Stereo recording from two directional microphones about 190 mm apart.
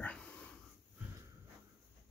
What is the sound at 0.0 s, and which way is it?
Wheeze, 5° left (ahead or behind).